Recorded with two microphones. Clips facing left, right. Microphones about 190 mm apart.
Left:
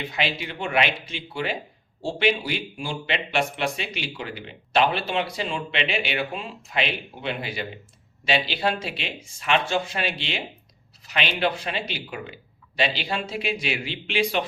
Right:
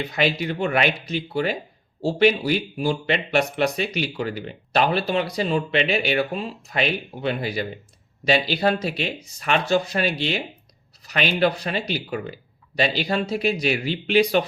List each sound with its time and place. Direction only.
0.0 s speech: 40° right (ahead or behind)